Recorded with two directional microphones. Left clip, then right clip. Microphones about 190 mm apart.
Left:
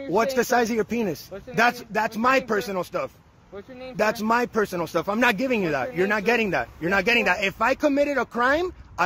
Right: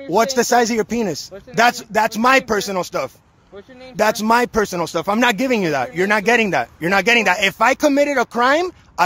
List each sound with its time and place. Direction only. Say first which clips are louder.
0.1 s a man's voice: right 6 dB; 25° right (ahead or behind)